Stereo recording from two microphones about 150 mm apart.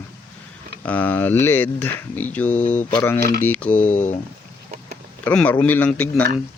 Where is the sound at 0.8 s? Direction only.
10° left (ahead or behind).